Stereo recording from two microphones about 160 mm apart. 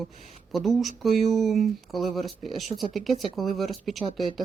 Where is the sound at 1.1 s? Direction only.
45° right (ahead or behind).